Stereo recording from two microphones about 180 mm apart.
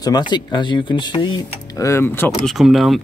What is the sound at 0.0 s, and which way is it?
Speech, 25° left (ahead or behind).